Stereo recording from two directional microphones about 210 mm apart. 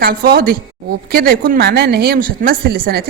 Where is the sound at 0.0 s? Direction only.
45° right (ahead or behind).